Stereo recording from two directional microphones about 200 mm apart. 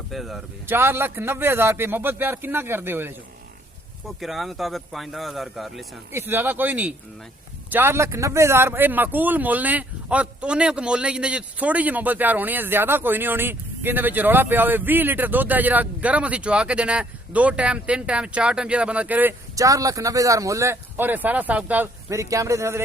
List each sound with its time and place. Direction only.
0.1 s speech: centre (ahead or behind)
0.8 s a man's voice: 10° right (ahead or behind)
4.2 s speech: centre (ahead or behind)
6.1 s a man's voice: 10° right (ahead or behind)